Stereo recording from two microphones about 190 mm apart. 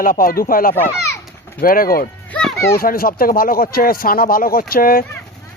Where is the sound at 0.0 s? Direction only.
50° left (ahead or behind).